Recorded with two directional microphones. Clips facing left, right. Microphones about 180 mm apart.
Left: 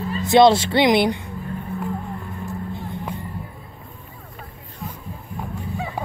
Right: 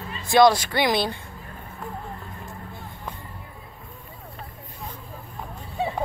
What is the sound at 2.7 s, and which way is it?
Music, 20° left (ahead or behind).